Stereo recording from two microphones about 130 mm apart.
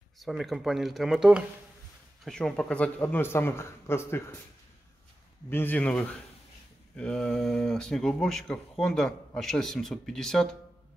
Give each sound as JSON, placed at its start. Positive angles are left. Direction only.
{"t": 0.2, "sound": "a man's voice", "side_deg": 0}
{"t": 5.5, "sound": "a man's voice", "side_deg": 15}